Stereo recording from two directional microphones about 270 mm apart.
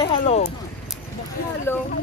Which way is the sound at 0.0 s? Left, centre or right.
Left.